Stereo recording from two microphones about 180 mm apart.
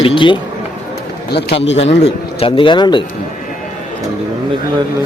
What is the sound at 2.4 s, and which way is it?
Speech, 30° left (ahead or behind).